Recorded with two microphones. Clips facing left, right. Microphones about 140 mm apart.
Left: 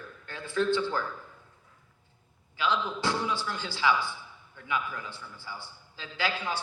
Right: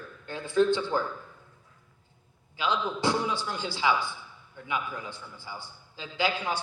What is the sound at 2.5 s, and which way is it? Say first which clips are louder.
A man's voice: even; 15° right (ahead or behind).